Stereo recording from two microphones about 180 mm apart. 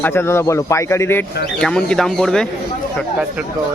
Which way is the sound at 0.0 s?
10° left (ahead or behind).